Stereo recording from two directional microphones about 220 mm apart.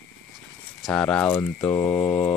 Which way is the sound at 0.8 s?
5° left (ahead or behind).